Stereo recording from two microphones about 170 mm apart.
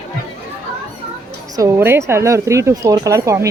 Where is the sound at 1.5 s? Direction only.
15° right (ahead or behind).